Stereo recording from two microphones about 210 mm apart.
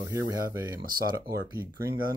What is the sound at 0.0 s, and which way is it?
Speech, 15° right (ahead or behind).